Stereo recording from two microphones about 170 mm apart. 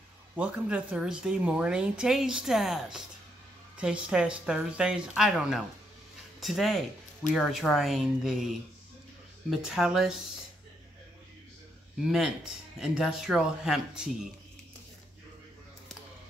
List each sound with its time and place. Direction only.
0.4 s speech: 5° right (ahead or behind)
9.5 s speech: 5° right (ahead or behind)
12.0 s speech: 5° right (ahead or behind)